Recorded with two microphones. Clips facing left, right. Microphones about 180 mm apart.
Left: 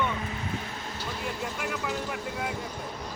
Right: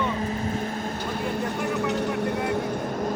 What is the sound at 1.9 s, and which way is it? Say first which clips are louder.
Speech: right 8 dB; 70° right (ahead or behind).